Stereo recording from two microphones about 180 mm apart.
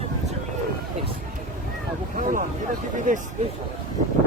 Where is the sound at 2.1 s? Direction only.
45° right (ahead or behind).